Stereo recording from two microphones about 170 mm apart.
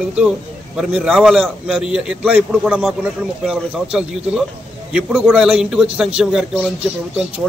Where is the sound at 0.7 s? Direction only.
Centre (ahead or behind).